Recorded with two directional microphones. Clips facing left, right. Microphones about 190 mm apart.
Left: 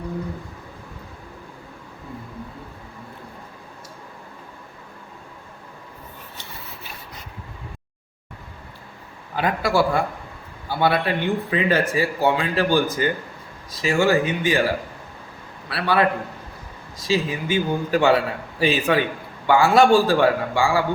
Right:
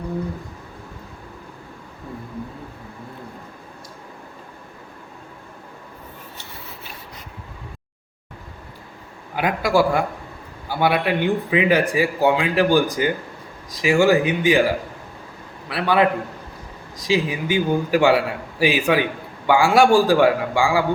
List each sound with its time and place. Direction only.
9.3 s a man's voice: 15° right (ahead or behind)
15.7 s a man's voice: 15° right (ahead or behind)